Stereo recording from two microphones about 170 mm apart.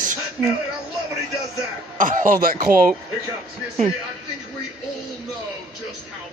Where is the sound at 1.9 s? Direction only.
50° right (ahead or behind).